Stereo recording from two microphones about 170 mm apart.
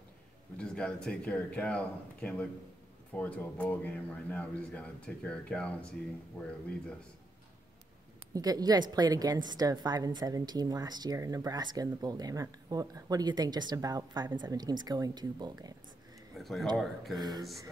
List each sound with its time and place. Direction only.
0.6 s speech: 5° left (ahead or behind)
8.3 s a woman's voice: 20° right (ahead or behind)
16.3 s speech: centre (ahead or behind)
17.2 s a woman's voice: 25° right (ahead or behind)